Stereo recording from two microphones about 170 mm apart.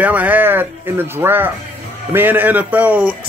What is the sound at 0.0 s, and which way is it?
A man's voice, 10° right (ahead or behind).